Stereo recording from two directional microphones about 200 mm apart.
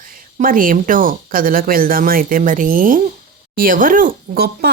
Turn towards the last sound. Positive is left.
turn(degrees=-50)  # may be behind; listen again after turning